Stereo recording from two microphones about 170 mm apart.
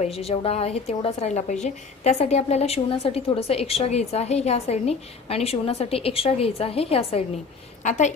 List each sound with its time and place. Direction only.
0.0 s a woman's voice: 35° left (ahead or behind)